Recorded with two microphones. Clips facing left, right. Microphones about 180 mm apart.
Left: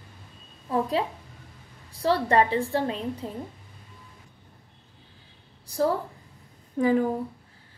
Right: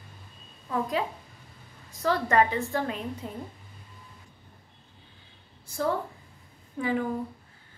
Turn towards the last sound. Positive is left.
turn(degrees=40)  # may be behind; listen again after turning